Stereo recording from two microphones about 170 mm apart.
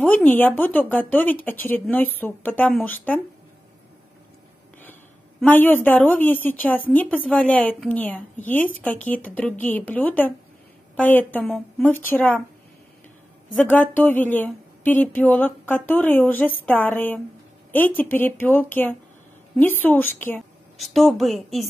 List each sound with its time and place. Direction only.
0.0 s a woman's voice: 10° left (ahead or behind)
5.4 s a woman's voice: 10° left (ahead or behind)
13.7 s a woman's voice: 10° left (ahead or behind)
20.3 s a woman's voice: centre (ahead or behind)